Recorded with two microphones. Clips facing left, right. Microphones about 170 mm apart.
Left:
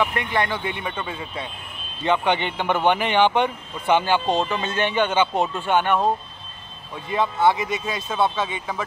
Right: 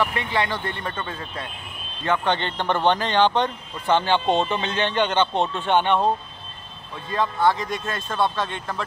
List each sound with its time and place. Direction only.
0.5 s speech: 15° left (ahead or behind)
7.1 s speech: 20° left (ahead or behind)
7.5 s speech: 5° left (ahead or behind)